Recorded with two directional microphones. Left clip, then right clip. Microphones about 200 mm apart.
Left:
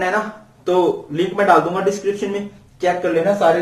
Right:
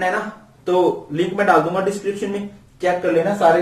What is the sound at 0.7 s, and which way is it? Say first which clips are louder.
A man's voice: left 1 dB; 20° left (ahead or behind).